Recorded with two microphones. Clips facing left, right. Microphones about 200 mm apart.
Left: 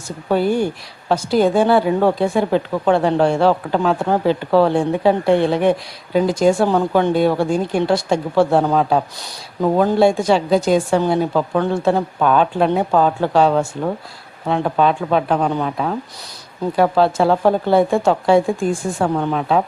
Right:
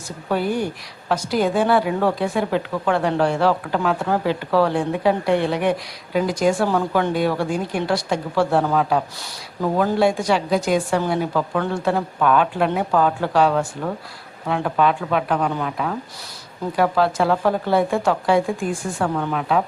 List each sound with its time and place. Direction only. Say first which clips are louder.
0.3 s a woman's voice: left 5 dB; 30° left (ahead or behind)